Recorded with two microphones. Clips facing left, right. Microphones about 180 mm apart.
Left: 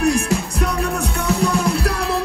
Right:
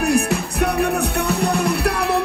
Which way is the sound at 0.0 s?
60° right (ahead or behind).